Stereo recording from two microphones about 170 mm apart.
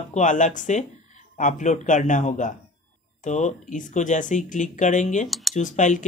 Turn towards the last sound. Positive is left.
turn(degrees=45)  # may be behind; listen again after turning